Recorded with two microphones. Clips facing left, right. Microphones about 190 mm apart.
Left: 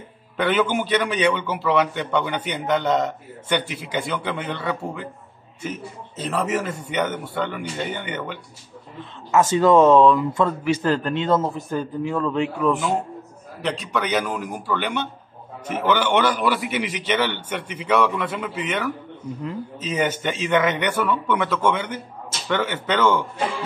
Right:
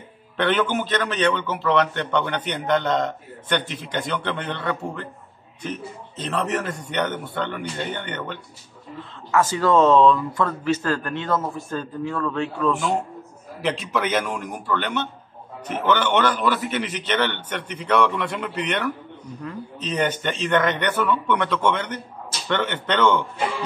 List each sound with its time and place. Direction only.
0.4 s a man's voice: 5° left (ahead or behind)
9.3 s a man's voice: 20° left (ahead or behind)
13.6 s a man's voice: centre (ahead or behind)